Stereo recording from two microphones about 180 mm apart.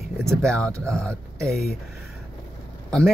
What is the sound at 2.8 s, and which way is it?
Speech, centre (ahead or behind).